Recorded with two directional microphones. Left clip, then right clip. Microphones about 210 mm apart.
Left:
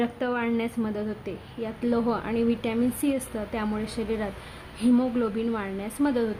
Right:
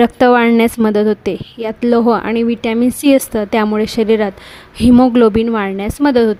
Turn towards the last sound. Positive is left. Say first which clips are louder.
# right 14 dB
turn(degrees=-45)  # may be behind; listen again after turning